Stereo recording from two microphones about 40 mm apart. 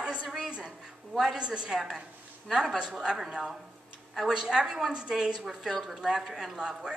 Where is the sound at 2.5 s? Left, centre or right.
Centre.